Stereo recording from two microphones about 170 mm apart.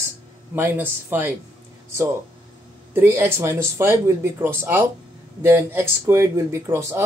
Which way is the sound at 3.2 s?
15° right (ahead or behind).